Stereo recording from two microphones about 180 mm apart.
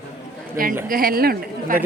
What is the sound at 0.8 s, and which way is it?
Speech, 55° right (ahead or behind).